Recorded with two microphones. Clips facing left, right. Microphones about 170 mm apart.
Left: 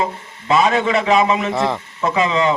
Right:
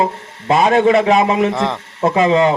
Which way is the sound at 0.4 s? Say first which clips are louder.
Right 4 dB; 55° right (ahead or behind).